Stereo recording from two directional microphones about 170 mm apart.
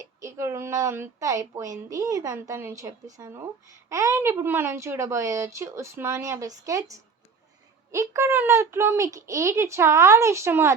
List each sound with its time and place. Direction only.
0.0 s speech: 20° right (ahead or behind)